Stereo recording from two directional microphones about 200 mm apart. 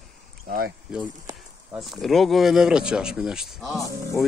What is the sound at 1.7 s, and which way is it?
Speech, centre (ahead or behind).